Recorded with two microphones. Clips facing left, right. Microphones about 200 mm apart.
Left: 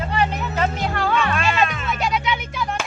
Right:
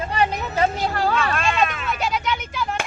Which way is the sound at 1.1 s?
Centre (ahead or behind).